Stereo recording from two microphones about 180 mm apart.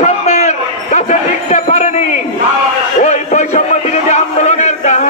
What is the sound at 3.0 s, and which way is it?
Music, 40° left (ahead or behind).